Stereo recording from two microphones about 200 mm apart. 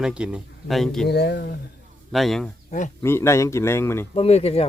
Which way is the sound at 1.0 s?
55° left (ahead or behind).